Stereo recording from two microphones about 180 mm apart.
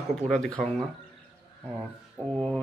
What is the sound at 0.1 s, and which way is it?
Speech, 5° left (ahead or behind).